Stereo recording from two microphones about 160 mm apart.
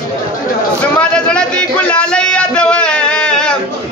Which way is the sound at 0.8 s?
5° left (ahead or behind).